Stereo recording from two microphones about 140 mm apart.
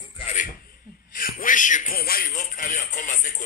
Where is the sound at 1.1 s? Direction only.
75° left (ahead or behind).